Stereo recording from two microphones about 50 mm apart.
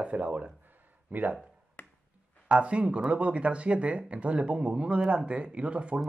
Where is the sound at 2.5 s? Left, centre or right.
Right.